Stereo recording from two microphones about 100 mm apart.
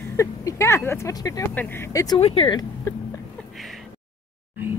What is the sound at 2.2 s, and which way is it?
Speech, 80° left.